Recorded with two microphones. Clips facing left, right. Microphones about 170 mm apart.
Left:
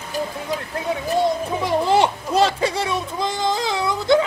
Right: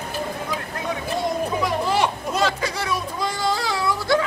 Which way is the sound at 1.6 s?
30° left (ahead or behind).